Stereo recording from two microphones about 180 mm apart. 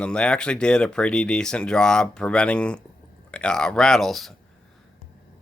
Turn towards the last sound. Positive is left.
turn(degrees=0)  # may be behind; listen again after turning